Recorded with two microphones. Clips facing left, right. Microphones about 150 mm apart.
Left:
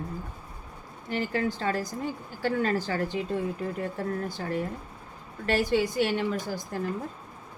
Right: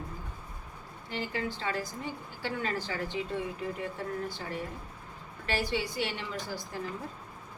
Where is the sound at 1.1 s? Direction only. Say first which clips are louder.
Left 6 dB; 45° left (ahead or behind).